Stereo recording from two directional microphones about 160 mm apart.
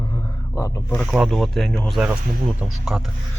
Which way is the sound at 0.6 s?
20° left (ahead or behind).